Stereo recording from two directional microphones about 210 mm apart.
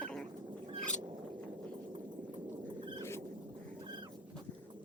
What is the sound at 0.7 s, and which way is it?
Rodents, 5° left (ahead or behind).